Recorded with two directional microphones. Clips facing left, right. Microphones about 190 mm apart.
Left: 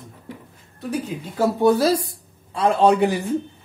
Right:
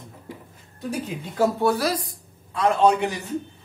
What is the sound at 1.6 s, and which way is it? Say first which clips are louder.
Speech: left 5 dB; 20° left (ahead or behind).